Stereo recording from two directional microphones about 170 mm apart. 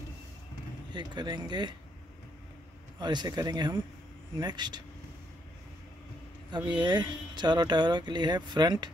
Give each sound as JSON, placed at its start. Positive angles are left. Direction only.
{"t": 0.9, "sound": "speech", "side_deg": -25}
{"t": 3.0, "sound": "speech", "side_deg": -25}
{"t": 6.5, "sound": "speech", "side_deg": -25}